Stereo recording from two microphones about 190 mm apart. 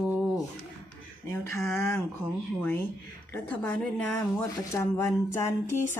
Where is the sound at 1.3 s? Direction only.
15° left (ahead or behind).